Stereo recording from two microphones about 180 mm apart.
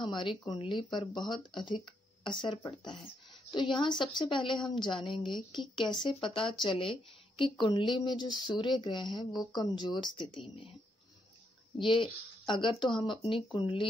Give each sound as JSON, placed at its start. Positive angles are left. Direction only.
{"t": 0.1, "sound": "speech", "side_deg": 25}
{"t": 11.8, "sound": "speech", "side_deg": 25}